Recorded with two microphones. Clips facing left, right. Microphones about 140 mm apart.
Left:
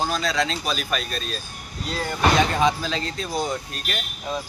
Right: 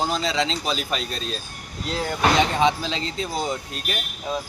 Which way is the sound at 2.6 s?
20° right (ahead or behind).